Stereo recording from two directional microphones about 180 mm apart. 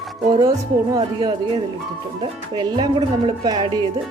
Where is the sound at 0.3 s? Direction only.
25° right (ahead or behind).